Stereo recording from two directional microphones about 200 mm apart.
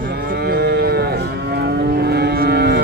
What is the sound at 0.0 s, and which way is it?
Moo, 45° right (ahead or behind).